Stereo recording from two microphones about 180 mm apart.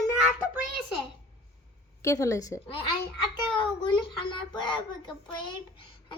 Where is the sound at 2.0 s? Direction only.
20° left (ahead or behind).